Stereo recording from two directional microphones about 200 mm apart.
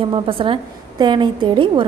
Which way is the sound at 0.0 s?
25° right (ahead or behind).